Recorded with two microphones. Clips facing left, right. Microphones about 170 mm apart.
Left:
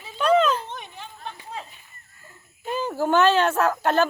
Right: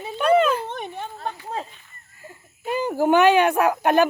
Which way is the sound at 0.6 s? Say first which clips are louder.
Right 7 dB; 55° right (ahead or behind).